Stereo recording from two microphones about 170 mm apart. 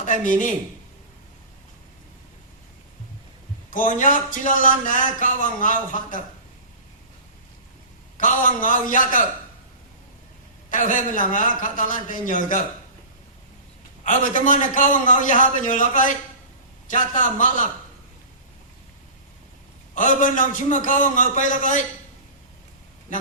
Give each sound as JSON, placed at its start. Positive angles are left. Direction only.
{"t": 0.0, "sound": "speech", "side_deg": 50}
{"t": 3.7, "sound": "a man's voice", "side_deg": 50}
{"t": 8.2, "sound": "a man's voice", "side_deg": 50}
{"t": 10.7, "sound": "a man's voice", "side_deg": 50}
{"t": 14.0, "sound": "a man's voice", "side_deg": 50}
{"t": 19.9, "sound": "a man's voice", "side_deg": 50}